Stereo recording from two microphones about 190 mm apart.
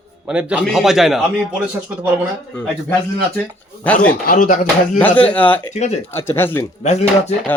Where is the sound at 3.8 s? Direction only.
5° left (ahead or behind).